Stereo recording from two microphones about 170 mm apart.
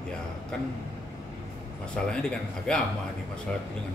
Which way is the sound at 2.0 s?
5° left (ahead or behind).